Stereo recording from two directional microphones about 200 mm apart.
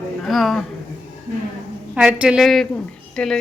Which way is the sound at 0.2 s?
Centre (ahead or behind).